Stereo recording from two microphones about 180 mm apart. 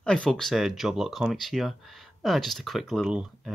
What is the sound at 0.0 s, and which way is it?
Speech, 5° left (ahead or behind).